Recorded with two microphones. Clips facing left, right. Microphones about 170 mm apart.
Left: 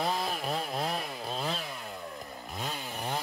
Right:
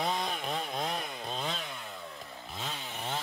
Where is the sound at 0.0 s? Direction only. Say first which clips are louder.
Left 1 dB; 5° left (ahead or behind).